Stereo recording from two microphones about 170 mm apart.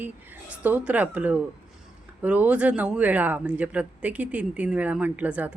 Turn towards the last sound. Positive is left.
turn(degrees=-10)  # may be behind; listen again after turning